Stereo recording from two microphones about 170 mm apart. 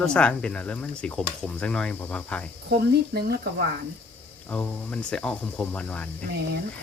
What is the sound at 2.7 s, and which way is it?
Speech, 65° right (ahead or behind).